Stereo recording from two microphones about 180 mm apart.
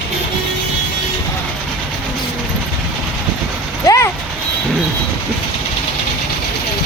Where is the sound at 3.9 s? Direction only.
15° left (ahead or behind).